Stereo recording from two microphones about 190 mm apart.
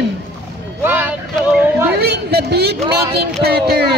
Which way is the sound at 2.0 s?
55° right (ahead or behind).